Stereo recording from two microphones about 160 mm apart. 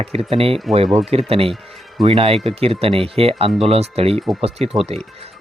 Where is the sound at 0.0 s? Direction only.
40° right (ahead or behind).